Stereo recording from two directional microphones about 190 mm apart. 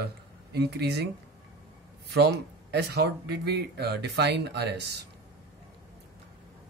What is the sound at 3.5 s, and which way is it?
Speech, 60° right (ahead or behind).